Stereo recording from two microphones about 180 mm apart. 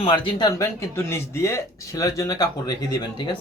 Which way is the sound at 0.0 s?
25° left (ahead or behind).